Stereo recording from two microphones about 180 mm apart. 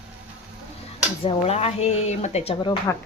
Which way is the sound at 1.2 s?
35° left (ahead or behind).